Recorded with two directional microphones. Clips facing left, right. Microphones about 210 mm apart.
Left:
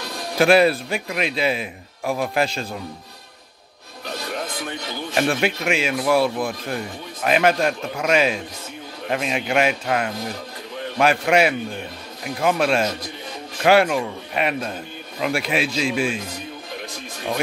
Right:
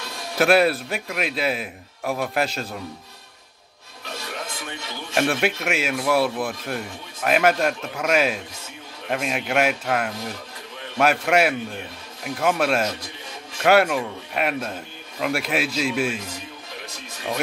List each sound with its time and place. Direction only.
0.4 s a man's voice: centre (ahead or behind)
5.1 s a man's voice: 5° right (ahead or behind)